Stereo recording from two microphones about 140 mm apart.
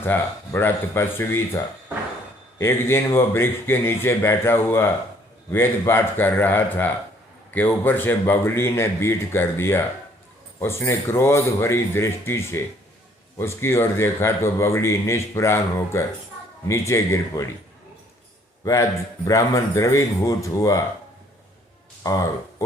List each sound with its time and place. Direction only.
0.0 s a man's voice: 15° left (ahead or behind)
18.6 s a man's voice: 20° left (ahead or behind)
22.0 s speech: 25° left (ahead or behind)